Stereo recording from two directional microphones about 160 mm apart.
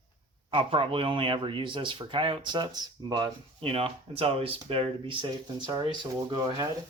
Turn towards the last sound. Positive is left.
turn(degrees=-25)  # may be behind; listen again after turning